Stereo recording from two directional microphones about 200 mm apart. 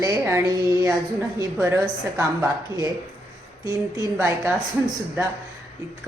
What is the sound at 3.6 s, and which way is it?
Speech, 15° right (ahead or behind).